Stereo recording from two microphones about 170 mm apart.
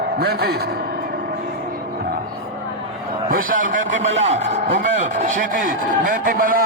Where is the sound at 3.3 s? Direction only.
55° right (ahead or behind).